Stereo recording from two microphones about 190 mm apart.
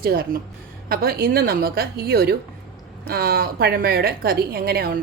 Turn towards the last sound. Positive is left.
turn(degrees=-55)  # may be behind; listen again after turning